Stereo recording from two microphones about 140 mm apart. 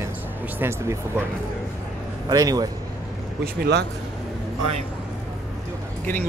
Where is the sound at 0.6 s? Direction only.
20° right (ahead or behind).